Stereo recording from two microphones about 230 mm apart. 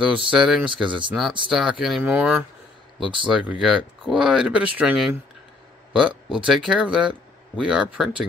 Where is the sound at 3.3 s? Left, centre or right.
Centre.